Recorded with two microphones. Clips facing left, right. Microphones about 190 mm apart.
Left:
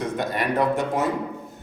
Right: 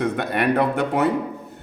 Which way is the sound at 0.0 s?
60° right (ahead or behind).